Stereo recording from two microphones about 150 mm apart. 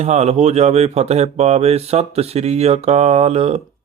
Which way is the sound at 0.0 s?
50° right (ahead or behind).